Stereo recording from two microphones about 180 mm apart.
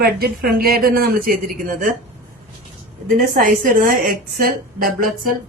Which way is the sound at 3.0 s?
50° right (ahead or behind).